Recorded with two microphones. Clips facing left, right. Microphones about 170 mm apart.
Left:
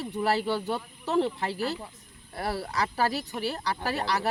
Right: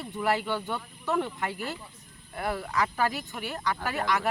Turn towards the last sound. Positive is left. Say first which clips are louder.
# even
turn(degrees=35)  # may be behind; listen again after turning